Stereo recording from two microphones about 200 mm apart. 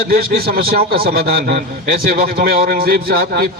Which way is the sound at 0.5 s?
50° right (ahead or behind).